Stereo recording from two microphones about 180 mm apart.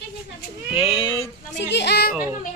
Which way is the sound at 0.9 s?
25° left (ahead or behind).